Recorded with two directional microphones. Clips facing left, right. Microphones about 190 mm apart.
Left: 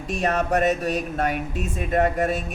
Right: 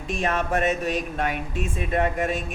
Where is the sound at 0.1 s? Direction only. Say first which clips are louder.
Left 2 dB; 40° left (ahead or behind).